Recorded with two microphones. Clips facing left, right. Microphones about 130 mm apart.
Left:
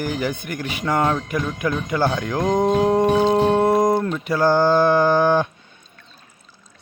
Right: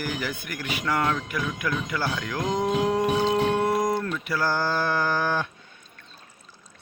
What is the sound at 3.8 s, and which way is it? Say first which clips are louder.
Speech: left 7 dB; 25° left (ahead or behind).